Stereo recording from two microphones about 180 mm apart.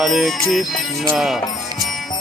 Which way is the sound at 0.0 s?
Centre (ahead or behind).